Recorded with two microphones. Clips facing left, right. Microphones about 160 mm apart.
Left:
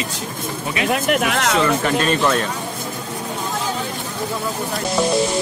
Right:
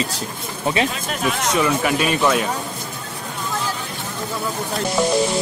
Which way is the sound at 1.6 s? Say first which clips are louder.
Left 1 dB; 10° right (ahead or behind).